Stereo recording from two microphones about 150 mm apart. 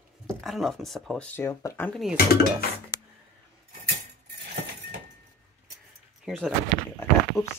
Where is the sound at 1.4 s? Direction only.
20° left (ahead or behind).